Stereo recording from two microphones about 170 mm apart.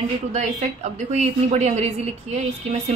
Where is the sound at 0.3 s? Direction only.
40° right (ahead or behind).